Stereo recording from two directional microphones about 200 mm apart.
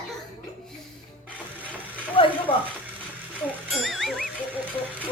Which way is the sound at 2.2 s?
25° left (ahead or behind).